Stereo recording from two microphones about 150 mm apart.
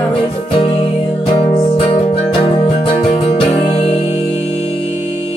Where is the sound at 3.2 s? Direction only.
45° left (ahead or behind).